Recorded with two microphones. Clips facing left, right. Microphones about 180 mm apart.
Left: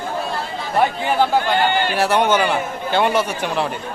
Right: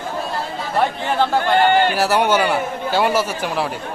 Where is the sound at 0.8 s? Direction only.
5° left (ahead or behind).